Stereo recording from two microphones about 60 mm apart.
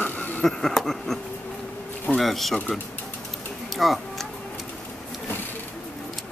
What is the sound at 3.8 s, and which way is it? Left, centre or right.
Tick-tock, centre.